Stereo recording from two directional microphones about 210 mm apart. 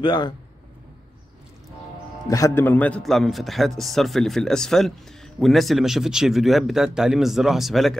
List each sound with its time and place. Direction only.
0.0 s a man's voice: 20° left (ahead or behind)
2.2 s a man's voice: 15° left (ahead or behind); by 8.0 s centre (ahead or behind)